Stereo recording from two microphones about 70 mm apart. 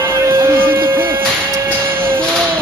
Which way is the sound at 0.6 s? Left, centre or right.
Right.